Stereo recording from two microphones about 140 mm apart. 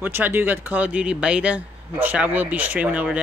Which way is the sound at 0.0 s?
15° right (ahead or behind).